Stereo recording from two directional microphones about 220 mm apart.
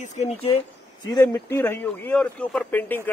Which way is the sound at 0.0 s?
30° left (ahead or behind).